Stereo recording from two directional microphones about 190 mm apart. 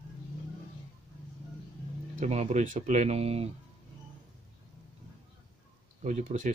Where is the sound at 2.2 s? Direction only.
35° right (ahead or behind).